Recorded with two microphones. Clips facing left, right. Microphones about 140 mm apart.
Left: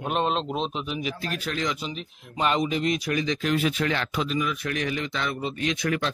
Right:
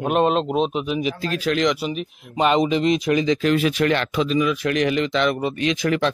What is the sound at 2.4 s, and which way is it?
Speech, 90° right.